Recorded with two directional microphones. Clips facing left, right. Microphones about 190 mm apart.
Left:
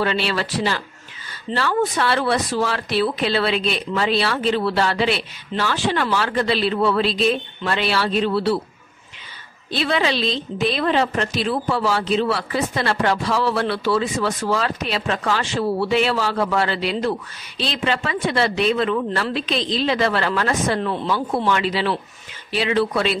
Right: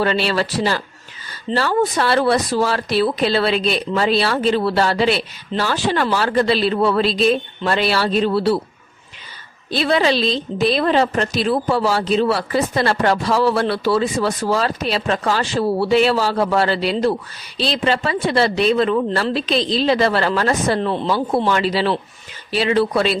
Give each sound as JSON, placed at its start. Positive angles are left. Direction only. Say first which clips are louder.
{"t": 0.0, "sound": "a woman's voice", "louder": "right 3 dB", "side_deg": -40}
{"t": 9.7, "sound": "a woman's voice", "louder": "right 4 dB", "side_deg": -40}